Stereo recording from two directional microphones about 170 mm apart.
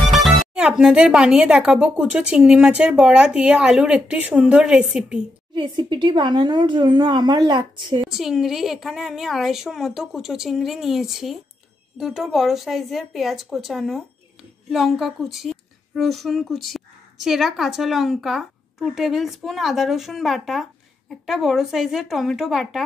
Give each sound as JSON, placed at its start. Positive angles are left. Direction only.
{"t": 0.1, "sound": "a woman's voice", "side_deg": 0}
{"t": 5.5, "sound": "a woman's voice", "side_deg": -25}
{"t": 8.1, "sound": "a woman's voice", "side_deg": 0}